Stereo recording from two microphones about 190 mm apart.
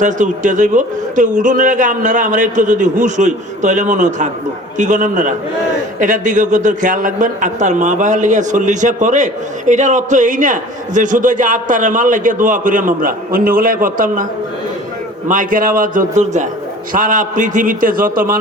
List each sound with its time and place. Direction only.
0.0 s a man's voice: 40° right (ahead or behind)
15.3 s a man's voice: 45° right (ahead or behind)